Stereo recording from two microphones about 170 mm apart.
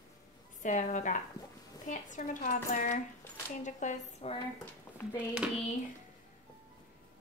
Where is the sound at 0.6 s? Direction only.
45° left (ahead or behind).